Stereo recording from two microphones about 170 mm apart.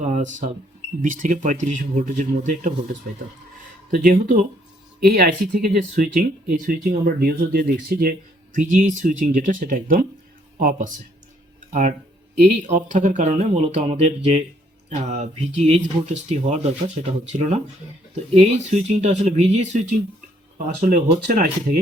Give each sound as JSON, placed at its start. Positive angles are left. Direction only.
{"t": 0.0, "sound": "cash register", "side_deg": -45}
{"t": 1.0, "sound": "speech", "side_deg": -50}
{"t": 8.5, "sound": "speech", "side_deg": -50}
{"t": 20.8, "sound": "speech", "side_deg": -50}